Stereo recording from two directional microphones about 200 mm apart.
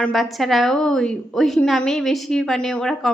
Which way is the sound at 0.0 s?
Centre (ahead or behind).